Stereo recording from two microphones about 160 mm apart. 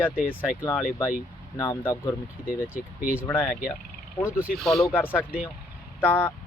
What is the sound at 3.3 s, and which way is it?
Speech, 10° left (ahead or behind).